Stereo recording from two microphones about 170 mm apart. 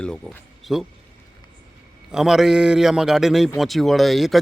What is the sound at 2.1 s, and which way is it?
Speech, centre (ahead or behind).